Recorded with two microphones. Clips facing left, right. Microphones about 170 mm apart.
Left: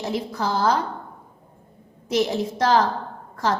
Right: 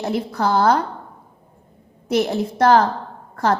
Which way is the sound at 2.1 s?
60° right (ahead or behind).